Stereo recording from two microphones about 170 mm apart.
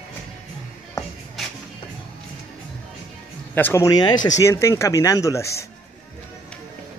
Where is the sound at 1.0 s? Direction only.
20° left (ahead or behind).